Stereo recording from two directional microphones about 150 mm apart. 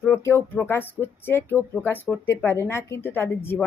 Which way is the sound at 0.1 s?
15° left (ahead or behind).